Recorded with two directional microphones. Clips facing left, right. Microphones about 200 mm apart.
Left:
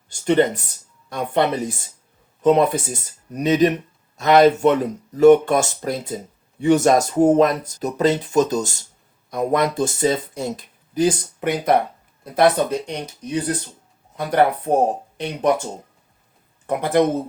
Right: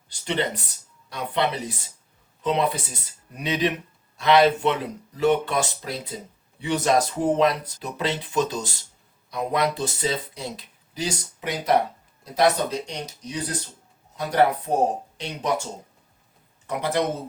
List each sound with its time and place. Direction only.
0.1 s speech: 50° left (ahead or behind)
16.6 s speech: 50° left (ahead or behind)